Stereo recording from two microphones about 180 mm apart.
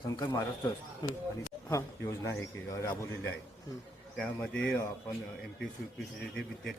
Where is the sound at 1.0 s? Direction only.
25° left (ahead or behind); by 4.7 s 5° left (ahead or behind).